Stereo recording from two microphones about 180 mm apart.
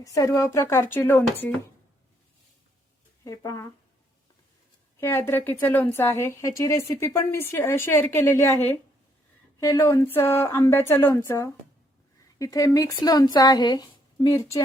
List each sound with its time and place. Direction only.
0.0 s speech: 20° left (ahead or behind)
3.2 s speech: 20° left (ahead or behind)
4.9 s speech: 15° left (ahead or behind)
9.6 s speech: 15° left (ahead or behind)